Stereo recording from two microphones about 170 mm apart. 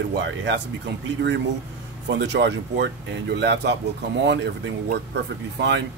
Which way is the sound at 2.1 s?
90° right.